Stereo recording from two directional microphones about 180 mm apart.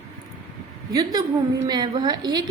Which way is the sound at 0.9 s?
20° right (ahead or behind).